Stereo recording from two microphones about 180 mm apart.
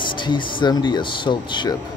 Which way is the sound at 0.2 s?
25° left (ahead or behind).